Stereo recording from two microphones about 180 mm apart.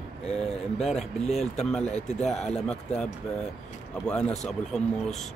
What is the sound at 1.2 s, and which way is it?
Speech, 40° left (ahead or behind).